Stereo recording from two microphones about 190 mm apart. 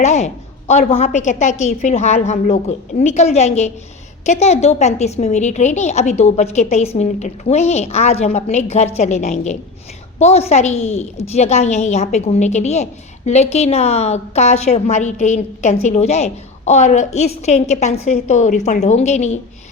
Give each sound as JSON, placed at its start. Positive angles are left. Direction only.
{"t": 0.0, "sound": "a woman's voice", "side_deg": 35}